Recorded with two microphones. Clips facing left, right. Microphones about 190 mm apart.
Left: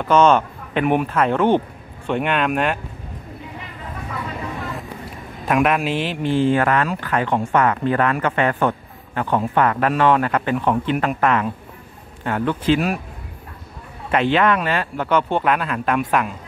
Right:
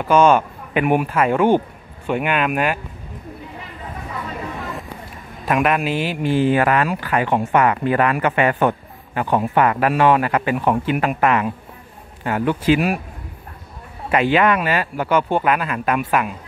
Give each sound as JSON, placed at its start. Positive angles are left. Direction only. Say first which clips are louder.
{"t": 0.0, "sound": "speech", "louder": "right 1 dB", "side_deg": -10}
{"t": 4.6, "sound": "a sound", "louder": "even", "side_deg": 0}
{"t": 5.4, "sound": "speech", "louder": "even", "side_deg": 0}
{"t": 14.1, "sound": "speech", "louder": "right 1 dB", "side_deg": -5}